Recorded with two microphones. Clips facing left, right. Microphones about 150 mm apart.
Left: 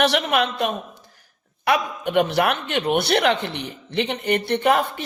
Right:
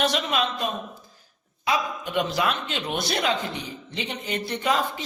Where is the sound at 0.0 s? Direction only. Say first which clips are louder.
Left 5 dB; 65° left (ahead or behind).